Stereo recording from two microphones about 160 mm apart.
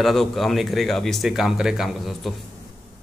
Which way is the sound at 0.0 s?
Centre (ahead or behind).